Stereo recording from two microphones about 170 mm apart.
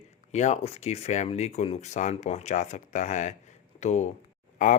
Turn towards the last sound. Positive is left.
turn(degrees=50)  # may be behind; listen again after turning